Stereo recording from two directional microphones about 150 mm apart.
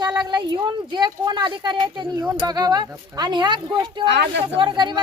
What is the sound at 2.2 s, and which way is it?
Speech, 10° right (ahead or behind).